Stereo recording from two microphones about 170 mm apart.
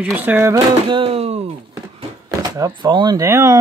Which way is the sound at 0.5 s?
30° right (ahead or behind).